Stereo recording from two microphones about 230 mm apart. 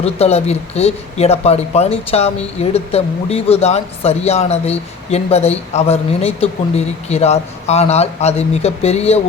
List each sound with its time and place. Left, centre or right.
0.0 s speech: left